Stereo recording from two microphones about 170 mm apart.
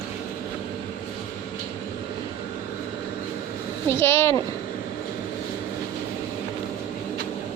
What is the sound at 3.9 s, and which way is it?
Speech, 15° left (ahead or behind).